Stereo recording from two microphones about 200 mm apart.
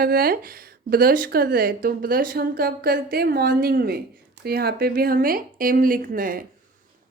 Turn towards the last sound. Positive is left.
turn(degrees=-45)  # may be behind; listen again after turning